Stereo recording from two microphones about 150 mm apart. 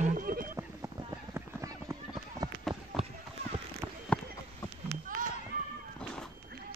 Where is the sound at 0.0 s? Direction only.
65° right (ahead or behind).